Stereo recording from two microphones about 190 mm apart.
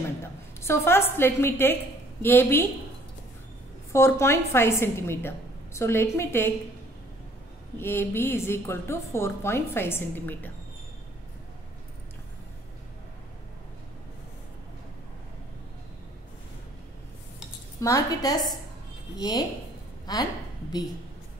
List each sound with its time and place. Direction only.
0.6 s a woman's voice: 15° left (ahead or behind)
3.9 s a woman's voice: 15° left (ahead or behind)
7.7 s a woman's voice: 10° left (ahead or behind)
17.7 s a woman's voice: 15° left (ahead or behind)